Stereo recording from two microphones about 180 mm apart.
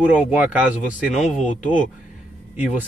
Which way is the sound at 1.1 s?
45° left (ahead or behind).